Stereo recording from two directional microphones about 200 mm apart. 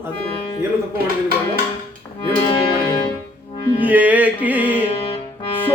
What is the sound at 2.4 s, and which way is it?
Music, 20° left (ahead or behind).